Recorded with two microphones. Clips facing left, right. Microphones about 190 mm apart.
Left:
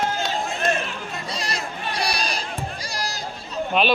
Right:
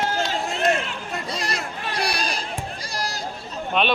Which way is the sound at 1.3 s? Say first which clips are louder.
Right 1 dB; 55° right (ahead or behind).